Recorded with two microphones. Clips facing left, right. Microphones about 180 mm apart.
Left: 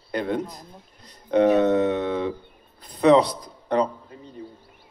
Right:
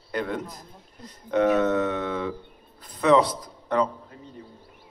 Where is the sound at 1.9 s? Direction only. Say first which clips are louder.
Left 4 dB; 20° left (ahead or behind).